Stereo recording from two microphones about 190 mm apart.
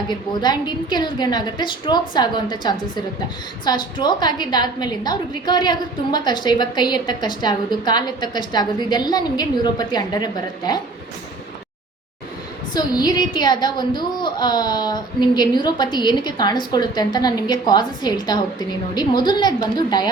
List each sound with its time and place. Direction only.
0.1 s a woman's voice: 20° left (ahead or behind)
12.7 s a woman's voice: 20° left (ahead or behind)